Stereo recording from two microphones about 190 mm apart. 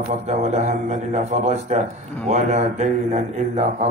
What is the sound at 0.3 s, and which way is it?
A man's voice, 35° right (ahead or behind).